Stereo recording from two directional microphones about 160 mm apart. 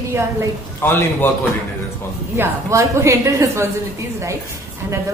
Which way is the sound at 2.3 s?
15° right (ahead or behind).